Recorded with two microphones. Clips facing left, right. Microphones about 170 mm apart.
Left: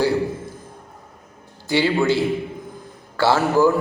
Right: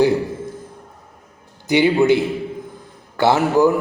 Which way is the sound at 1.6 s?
20° right (ahead or behind).